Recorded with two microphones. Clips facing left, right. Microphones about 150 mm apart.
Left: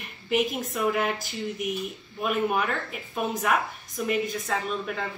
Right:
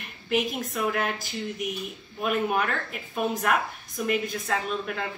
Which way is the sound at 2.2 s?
Centre (ahead or behind).